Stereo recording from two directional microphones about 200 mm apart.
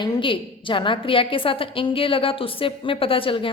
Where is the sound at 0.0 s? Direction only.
25° left (ahead or behind).